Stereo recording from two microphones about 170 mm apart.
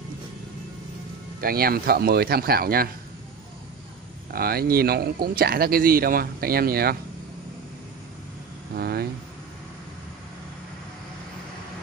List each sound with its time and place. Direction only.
1.4 s speech: 60° right (ahead or behind)
4.3 s speech: 65° right (ahead or behind)
8.7 s speech: 65° right (ahead or behind)